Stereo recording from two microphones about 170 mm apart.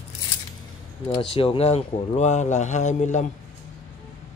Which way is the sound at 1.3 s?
30° left (ahead or behind).